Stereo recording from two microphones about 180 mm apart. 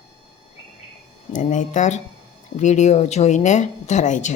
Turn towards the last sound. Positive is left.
turn(degrees=45)  # may be behind; listen again after turning